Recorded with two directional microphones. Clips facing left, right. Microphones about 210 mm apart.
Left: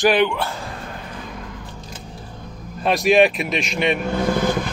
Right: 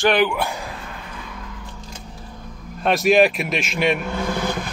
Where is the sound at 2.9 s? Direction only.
Centre (ahead or behind).